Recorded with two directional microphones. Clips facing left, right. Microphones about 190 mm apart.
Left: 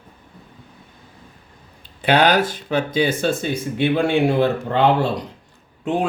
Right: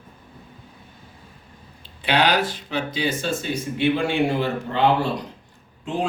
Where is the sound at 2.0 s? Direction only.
50° left (ahead or behind).